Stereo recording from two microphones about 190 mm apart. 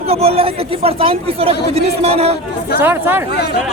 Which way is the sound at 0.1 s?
30° right (ahead or behind).